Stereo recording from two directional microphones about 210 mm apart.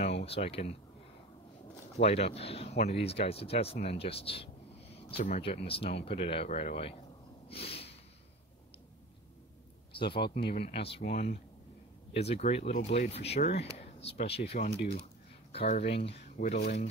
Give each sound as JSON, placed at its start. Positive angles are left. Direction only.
{"t": 0.0, "sound": "speech", "side_deg": 30}
{"t": 2.0, "sound": "speech", "side_deg": 30}
{"t": 7.4, "sound": "a sound", "side_deg": 30}
{"t": 10.4, "sound": "speech", "side_deg": 50}
{"t": 10.7, "sound": "speech", "side_deg": 25}
{"t": 11.1, "sound": "speech", "side_deg": 45}
{"t": 12.1, "sound": "speech", "side_deg": 30}